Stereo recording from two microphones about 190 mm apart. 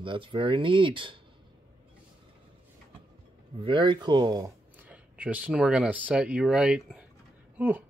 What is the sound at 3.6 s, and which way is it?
Speech, 25° right (ahead or behind).